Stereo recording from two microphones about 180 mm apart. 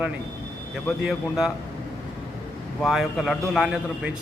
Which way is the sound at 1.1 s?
Centre (ahead or behind).